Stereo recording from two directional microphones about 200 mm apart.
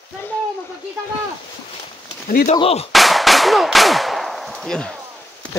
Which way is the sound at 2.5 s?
30° left (ahead or behind).